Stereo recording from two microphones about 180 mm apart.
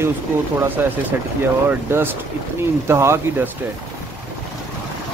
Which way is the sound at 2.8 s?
15° right (ahead or behind).